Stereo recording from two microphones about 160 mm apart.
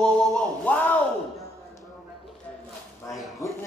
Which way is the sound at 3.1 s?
20° left (ahead or behind).